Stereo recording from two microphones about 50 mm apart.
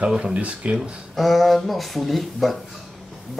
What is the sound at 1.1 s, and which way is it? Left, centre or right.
Speech, centre.